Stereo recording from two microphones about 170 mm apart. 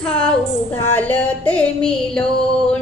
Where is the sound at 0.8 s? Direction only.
10° left (ahead or behind).